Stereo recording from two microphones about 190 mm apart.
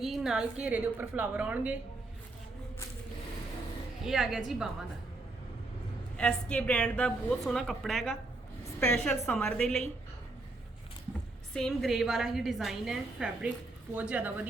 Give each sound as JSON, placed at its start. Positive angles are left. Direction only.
{"t": 0.0, "sound": "a woman's voice", "side_deg": 0}
{"t": 4.0, "sound": "a woman's voice", "side_deg": 0}
{"t": 6.1, "sound": "a woman's voice", "side_deg": 5}
{"t": 11.5, "sound": "a woman's voice", "side_deg": 0}